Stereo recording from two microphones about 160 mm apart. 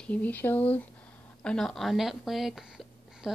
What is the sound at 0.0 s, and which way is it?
A woman's voice, 10° left (ahead or behind).